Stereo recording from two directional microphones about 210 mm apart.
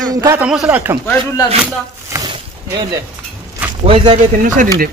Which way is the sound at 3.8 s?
25° right (ahead or behind).